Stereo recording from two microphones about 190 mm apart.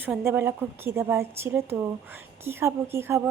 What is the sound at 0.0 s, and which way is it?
A woman's voice, 10° right (ahead or behind).